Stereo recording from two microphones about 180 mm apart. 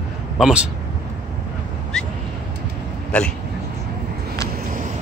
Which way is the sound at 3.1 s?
5° left (ahead or behind).